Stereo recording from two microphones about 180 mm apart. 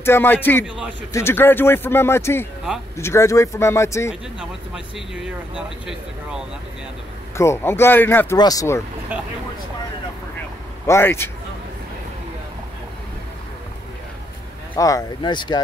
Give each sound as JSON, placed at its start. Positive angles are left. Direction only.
{"t": 0.0, "sound": "speech", "side_deg": 10}
{"t": 4.1, "sound": "speech", "side_deg": -5}
{"t": 7.3, "sound": "speech", "side_deg": 15}
{"t": 9.1, "sound": "speech", "side_deg": -10}
{"t": 10.9, "sound": "speech", "side_deg": 15}
{"t": 14.8, "sound": "speech", "side_deg": 20}